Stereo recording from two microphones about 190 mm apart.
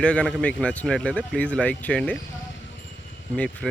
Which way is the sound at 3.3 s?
5° left (ahead or behind).